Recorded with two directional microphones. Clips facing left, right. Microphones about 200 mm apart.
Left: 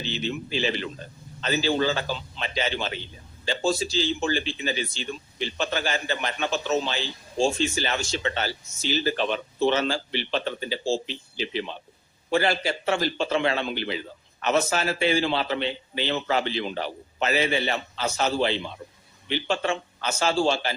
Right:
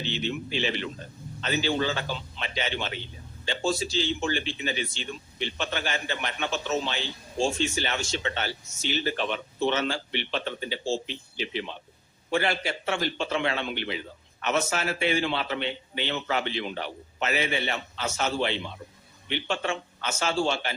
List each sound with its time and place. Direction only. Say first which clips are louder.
0.0 s speech: left 1 dB; 35° left (ahead or behind)